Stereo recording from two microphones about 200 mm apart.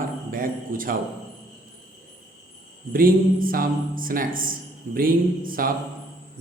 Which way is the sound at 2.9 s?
45° right (ahead or behind).